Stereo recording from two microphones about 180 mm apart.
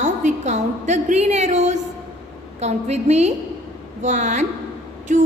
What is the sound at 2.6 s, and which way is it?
A woman's voice, 35° right (ahead or behind).